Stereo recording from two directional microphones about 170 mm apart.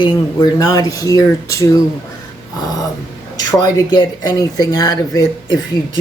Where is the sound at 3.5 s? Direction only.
25° left (ahead or behind).